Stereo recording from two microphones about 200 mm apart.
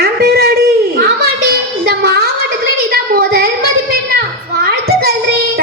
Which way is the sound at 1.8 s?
50° right (ahead or behind).